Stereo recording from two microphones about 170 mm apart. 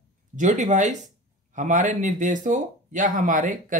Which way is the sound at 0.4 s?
45° right (ahead or behind).